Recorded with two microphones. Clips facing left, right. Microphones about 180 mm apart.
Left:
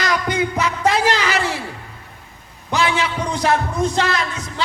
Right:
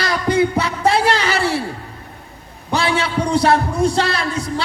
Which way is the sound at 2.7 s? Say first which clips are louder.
Right 1 dB; 35° right (ahead or behind).